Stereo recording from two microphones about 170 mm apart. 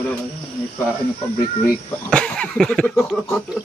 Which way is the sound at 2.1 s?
5° left (ahead or behind).